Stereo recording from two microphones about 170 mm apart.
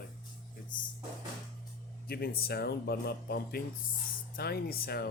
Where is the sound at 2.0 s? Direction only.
65° left (ahead or behind).